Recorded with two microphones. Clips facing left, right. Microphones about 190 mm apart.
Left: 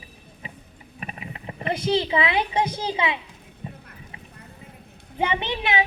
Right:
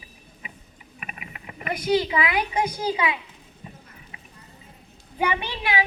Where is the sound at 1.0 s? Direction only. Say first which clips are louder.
Left 5 dB; 30° left (ahead or behind).